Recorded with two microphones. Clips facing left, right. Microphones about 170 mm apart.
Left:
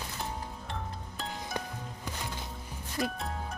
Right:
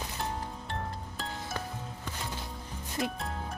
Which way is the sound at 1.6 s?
20° left (ahead or behind).